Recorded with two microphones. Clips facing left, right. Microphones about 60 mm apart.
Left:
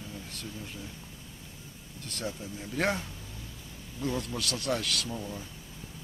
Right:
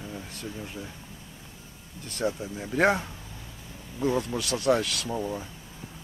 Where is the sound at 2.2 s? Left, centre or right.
Right.